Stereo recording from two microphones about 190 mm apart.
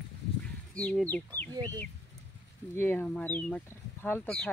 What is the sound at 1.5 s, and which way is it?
Speech, 20° right (ahead or behind).